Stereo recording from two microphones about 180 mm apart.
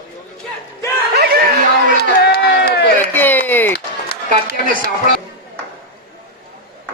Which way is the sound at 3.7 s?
65° left (ahead or behind).